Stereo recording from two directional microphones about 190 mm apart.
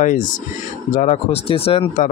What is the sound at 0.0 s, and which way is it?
Speech, 40° left (ahead or behind).